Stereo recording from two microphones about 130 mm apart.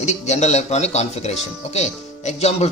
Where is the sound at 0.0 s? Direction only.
60° left (ahead or behind).